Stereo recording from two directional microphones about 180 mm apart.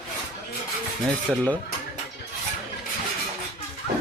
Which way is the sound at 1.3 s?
5° left (ahead or behind).